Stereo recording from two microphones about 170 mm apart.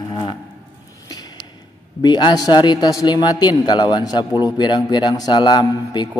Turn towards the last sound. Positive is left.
turn(degrees=25)  # may be behind; listen again after turning